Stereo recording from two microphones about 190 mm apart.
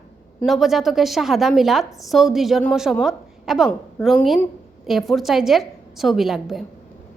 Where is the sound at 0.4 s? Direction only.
Centre (ahead or behind).